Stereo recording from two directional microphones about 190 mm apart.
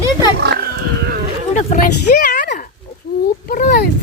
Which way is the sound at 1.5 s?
40° left (ahead or behind).